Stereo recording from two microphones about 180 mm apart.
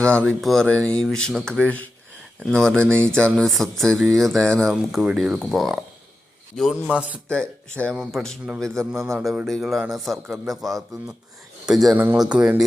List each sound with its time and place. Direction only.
0.0 s speech: 5° left (ahead or behind)
9.0 s a man's voice: 15° right (ahead or behind)
9.2 s speech: centre (ahead or behind)